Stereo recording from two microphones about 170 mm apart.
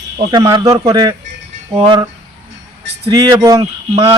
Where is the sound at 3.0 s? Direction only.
25° right (ahead or behind).